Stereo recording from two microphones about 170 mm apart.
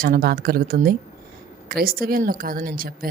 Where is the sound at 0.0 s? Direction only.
55° right (ahead or behind).